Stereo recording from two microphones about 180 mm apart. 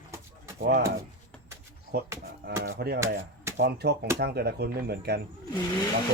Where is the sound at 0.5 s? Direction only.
55° right (ahead or behind).